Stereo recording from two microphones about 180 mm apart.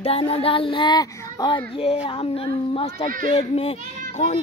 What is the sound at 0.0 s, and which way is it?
A woman's voice, 30° left (ahead or behind).